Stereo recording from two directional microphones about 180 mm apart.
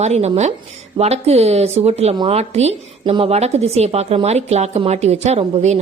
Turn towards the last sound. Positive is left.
turn(degrees=-35)  # may be behind; listen again after turning